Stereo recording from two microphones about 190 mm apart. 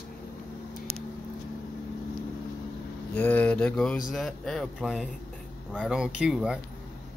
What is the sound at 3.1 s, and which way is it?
Mantra, 10° left (ahead or behind).